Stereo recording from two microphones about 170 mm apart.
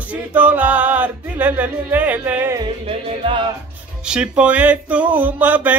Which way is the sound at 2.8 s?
35° right (ahead or behind).